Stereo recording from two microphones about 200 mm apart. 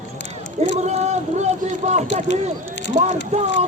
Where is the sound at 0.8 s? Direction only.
35° right (ahead or behind).